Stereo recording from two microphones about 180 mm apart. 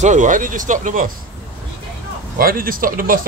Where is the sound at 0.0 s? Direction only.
45° right (ahead or behind).